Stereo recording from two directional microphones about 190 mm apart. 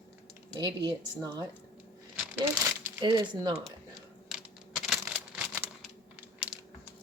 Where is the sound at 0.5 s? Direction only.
20° right (ahead or behind).